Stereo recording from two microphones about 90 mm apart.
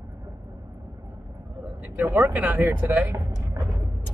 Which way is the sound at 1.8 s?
20° right (ahead or behind).